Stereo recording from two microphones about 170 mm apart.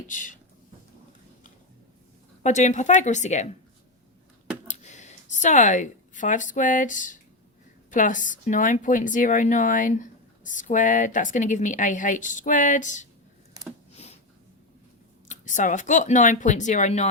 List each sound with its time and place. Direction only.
0.1 s speech: 50° left (ahead or behind)
2.4 s speech: 45° left (ahead or behind)
4.7 s speech: 45° left (ahead or behind)
13.9 s a sound: 40° left (ahead or behind)
15.3 s speech: 50° left (ahead or behind)